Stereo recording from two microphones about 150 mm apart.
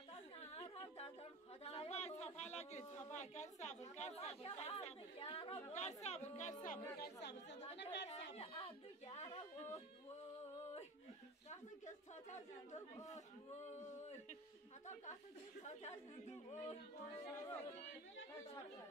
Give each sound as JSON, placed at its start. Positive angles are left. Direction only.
{"t": 0.4, "sound": "a sound", "side_deg": 45}
{"t": 3.1, "sound": "chatter", "side_deg": 50}
{"t": 5.7, "sound": "chatter", "side_deg": 50}
{"t": 6.6, "sound": "speech", "side_deg": 65}
{"t": 7.6, "sound": "chatter", "side_deg": 40}
{"t": 11.8, "sound": "speech", "side_deg": 50}
{"t": 15.6, "sound": "speech", "side_deg": 50}